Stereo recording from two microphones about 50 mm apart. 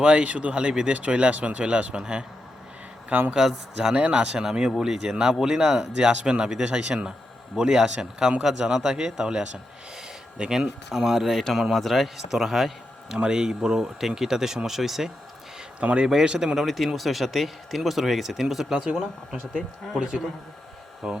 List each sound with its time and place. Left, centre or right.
0.0 s speech: right
3.1 s speech: right
3.3 s a man's voice: centre
3.9 s speech: right
4.4 s a man's voice: centre
13.2 s a man's voice: centre
15.8 s speech: right
16.6 s a man's voice: centre